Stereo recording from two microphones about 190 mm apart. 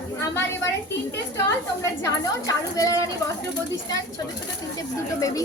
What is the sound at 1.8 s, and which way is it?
A woman's voice, 15° left (ahead or behind).